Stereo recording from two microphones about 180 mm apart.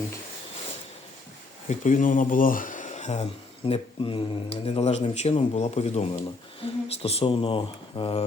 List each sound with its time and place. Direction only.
1.6 s speech: 45° left (ahead or behind); by 8.2 s 30° left (ahead or behind)